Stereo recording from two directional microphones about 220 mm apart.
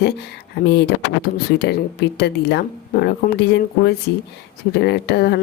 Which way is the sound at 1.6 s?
50° left (ahead or behind).